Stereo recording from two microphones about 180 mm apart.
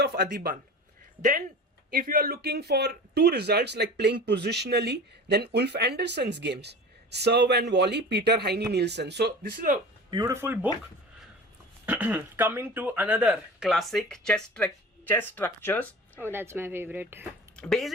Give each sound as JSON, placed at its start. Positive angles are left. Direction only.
{"t": 0.0, "sound": "speech", "side_deg": -60}
{"t": 1.9, "sound": "speech", "side_deg": -50}
{"t": 10.1, "sound": "speech", "side_deg": -20}
{"t": 11.9, "sound": "speech", "side_deg": -10}
{"t": 16.2, "sound": "speech", "side_deg": -10}
{"t": 17.6, "sound": "speech", "side_deg": 0}